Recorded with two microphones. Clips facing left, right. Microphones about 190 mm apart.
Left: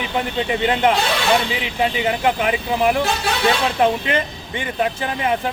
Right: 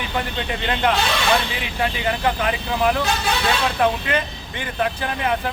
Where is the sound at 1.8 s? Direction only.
15° left (ahead or behind).